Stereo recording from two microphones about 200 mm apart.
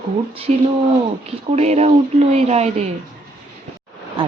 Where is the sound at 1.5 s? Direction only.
35° right (ahead or behind).